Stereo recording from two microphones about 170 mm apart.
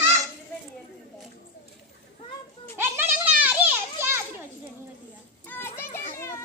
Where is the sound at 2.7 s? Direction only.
15° right (ahead or behind).